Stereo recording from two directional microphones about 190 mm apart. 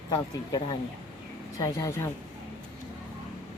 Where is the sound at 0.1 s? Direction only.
20° left (ahead or behind).